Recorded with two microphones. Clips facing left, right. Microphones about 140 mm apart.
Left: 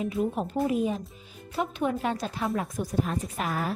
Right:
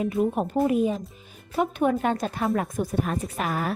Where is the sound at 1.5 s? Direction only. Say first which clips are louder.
Right 5 dB; 55° right (ahead or behind).